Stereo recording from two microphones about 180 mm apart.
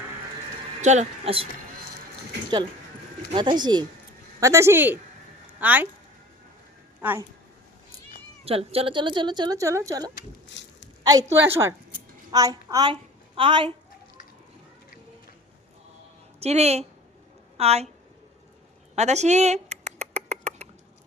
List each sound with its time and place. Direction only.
0.8 s speech: 40° right (ahead or behind)
3.3 s a woman's voice: 25° right (ahead or behind); by 5.9 s 10° right (ahead or behind)
7.0 s speech: 10° right (ahead or behind)
8.4 s a woman's voice: 30° right (ahead or behind)
16.4 s speech: 35° right (ahead or behind)
18.9 s a sound: 40° right (ahead or behind)